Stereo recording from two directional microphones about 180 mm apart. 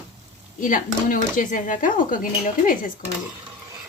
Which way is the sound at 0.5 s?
50° left (ahead or behind).